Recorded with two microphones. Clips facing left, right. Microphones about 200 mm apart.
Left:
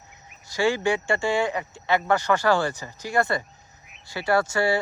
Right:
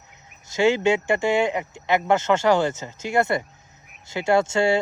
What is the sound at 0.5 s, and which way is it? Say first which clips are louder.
Speech: right 4 dB; 20° right (ahead or behind).